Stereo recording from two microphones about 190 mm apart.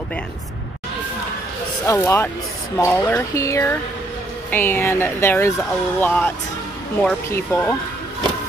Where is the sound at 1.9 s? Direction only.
15° left (ahead or behind).